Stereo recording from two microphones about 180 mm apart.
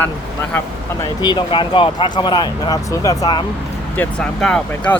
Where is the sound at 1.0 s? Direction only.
25° left (ahead or behind).